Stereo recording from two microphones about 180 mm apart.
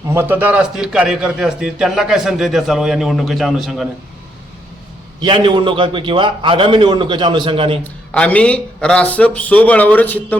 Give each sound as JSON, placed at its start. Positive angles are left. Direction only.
{"t": 0.1, "sound": "a man's voice", "side_deg": -10}
{"t": 5.2, "sound": "a man's voice", "side_deg": -25}
{"t": 8.1, "sound": "a man's voice", "side_deg": 5}